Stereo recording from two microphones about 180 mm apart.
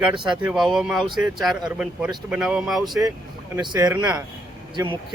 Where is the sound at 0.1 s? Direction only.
25° right (ahead or behind).